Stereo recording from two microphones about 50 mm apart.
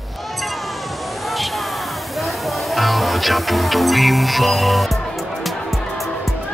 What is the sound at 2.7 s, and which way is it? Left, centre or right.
Music, centre.